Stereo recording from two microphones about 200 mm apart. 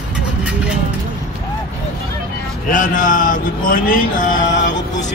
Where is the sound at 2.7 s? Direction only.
40° left (ahead or behind).